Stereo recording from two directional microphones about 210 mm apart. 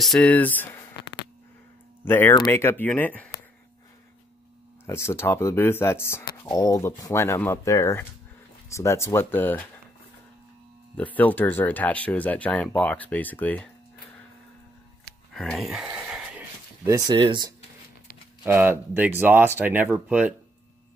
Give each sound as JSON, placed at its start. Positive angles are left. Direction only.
{"t": 0.0, "sound": "speech", "side_deg": 5}
{"t": 2.0, "sound": "speech", "side_deg": 10}
{"t": 4.8, "sound": "speech", "side_deg": 10}
{"t": 11.0, "sound": "speech", "side_deg": 5}
{"t": 15.3, "sound": "a sound", "side_deg": 0}
{"t": 17.2, "sound": "speech", "side_deg": -20}
{"t": 18.4, "sound": "speech", "side_deg": -10}